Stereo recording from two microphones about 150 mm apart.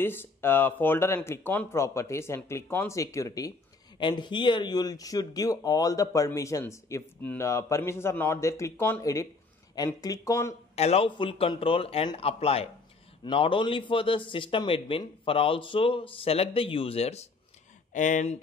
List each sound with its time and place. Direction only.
0.0 s speech: 15° left (ahead or behind)
10.8 s a man's voice: 40° left (ahead or behind)
17.9 s speech: 55° left (ahead or behind)